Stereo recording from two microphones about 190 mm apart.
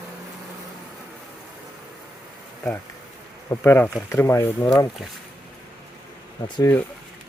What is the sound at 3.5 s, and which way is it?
Speech, 15° left (ahead or behind).